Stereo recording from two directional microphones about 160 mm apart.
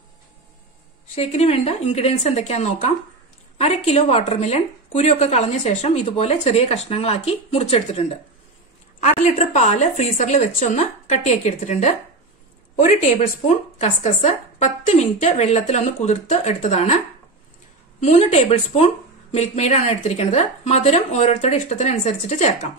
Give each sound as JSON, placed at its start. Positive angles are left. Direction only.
{"t": 1.1, "sound": "speech", "side_deg": 40}
{"t": 13.7, "sound": "speech", "side_deg": 45}
{"t": 18.0, "sound": "a woman's voice", "side_deg": 40}